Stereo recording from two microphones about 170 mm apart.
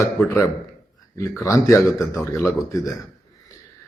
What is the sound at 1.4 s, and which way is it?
Speech, 20° left (ahead or behind).